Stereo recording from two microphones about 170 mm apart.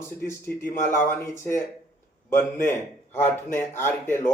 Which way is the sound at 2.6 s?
15° left (ahead or behind).